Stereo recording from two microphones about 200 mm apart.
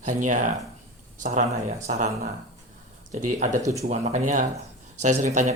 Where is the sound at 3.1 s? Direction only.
40° right (ahead or behind).